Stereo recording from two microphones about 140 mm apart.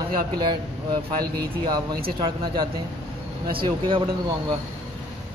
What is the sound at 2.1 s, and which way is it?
A man's voice, 35° right (ahead or behind).